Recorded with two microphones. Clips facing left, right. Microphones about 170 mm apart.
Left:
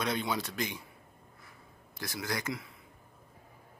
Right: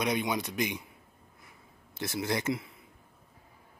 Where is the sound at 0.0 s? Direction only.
15° right (ahead or behind).